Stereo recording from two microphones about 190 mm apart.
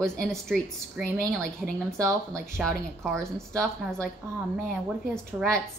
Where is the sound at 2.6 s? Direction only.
5° left (ahead or behind).